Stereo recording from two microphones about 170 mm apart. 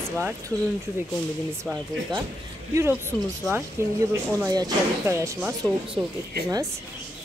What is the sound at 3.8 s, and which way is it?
Speech, 15° right (ahead or behind).